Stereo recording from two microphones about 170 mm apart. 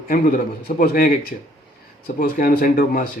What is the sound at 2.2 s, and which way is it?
Speech, 60° left (ahead or behind).